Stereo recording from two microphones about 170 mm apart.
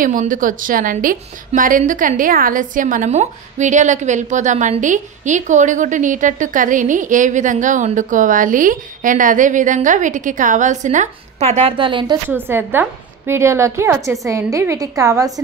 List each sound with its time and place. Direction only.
0.0 s a woman's voice: 50° right (ahead or behind); by 12.2 s 30° right (ahead or behind)
12.3 s a woman's voice: 10° right (ahead or behind)